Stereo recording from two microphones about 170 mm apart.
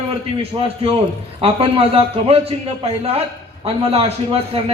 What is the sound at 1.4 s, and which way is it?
A man's voice, 35° right (ahead or behind).